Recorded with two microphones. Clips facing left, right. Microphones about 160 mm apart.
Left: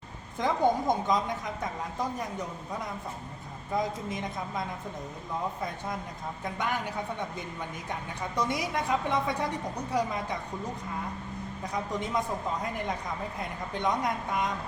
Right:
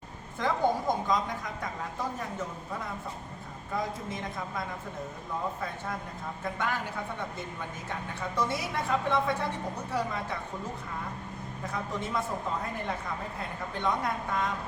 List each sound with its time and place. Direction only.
0.3 s a woman's voice: 20° left (ahead or behind)
3.8 s a woman's voice: 20° left (ahead or behind)
6.4 s a woman's voice: 15° left (ahead or behind)
8.4 s a woman's voice: 15° left (ahead or behind)
11.6 s a woman's voice: 15° left (ahead or behind)
13.8 s a woman's voice: 15° left (ahead or behind)